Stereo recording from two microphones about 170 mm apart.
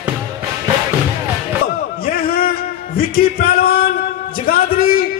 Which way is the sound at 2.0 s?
60° left (ahead or behind).